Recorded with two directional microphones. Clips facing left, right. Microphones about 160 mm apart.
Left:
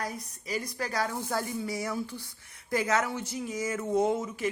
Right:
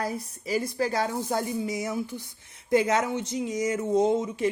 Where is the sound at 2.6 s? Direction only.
25° right (ahead or behind).